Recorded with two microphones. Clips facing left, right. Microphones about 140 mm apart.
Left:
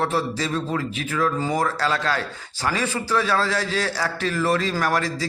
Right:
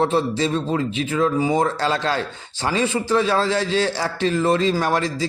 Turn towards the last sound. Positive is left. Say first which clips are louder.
# right 2 dB
turn(degrees=-25)  # may be behind; listen again after turning